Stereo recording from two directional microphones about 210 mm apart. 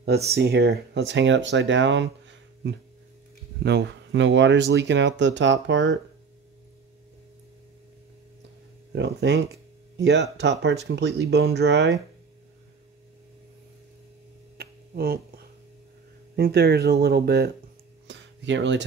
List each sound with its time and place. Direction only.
0.0 s speech: 50° right (ahead or behind)
3.6 s speech: 55° right (ahead or behind)
8.9 s speech: 55° right (ahead or behind)
14.6 s finger snapping: 45° right (ahead or behind)
16.3 s speech: 45° right (ahead or behind)
18.0 s a sound: 60° right (ahead or behind)